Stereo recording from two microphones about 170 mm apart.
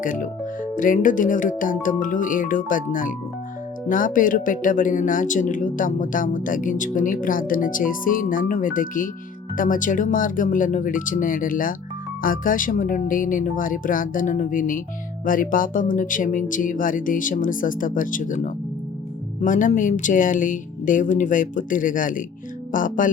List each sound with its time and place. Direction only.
0.0 s speech: 50° left (ahead or behind)